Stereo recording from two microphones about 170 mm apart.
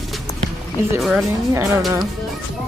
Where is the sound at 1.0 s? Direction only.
Centre (ahead or behind).